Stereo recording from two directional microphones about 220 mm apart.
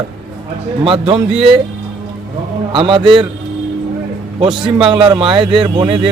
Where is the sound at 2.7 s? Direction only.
25° right (ahead or behind).